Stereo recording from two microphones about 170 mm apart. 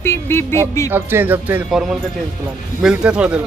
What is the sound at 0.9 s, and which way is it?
Speech, 10° right (ahead or behind).